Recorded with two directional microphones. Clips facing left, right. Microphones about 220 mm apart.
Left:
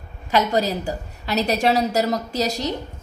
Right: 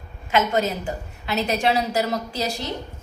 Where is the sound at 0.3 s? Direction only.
35° left (ahead or behind).